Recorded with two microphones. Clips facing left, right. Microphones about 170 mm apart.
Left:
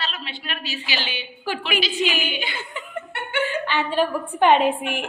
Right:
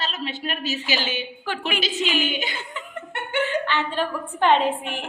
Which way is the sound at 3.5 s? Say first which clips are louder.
Even; 10° left (ahead or behind).